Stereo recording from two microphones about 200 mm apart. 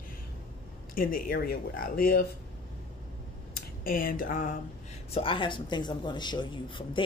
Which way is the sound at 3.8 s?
45° left (ahead or behind).